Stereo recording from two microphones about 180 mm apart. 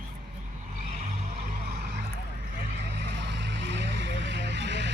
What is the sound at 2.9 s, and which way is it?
Music, 70° right (ahead or behind).